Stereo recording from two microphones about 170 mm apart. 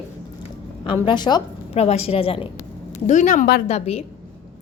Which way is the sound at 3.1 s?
50° left (ahead or behind).